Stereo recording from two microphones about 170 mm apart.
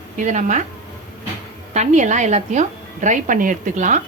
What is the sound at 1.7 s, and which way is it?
A woman's voice, 45° right (ahead or behind).